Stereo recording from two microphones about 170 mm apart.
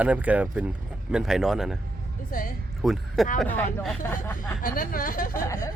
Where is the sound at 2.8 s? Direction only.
Centre (ahead or behind).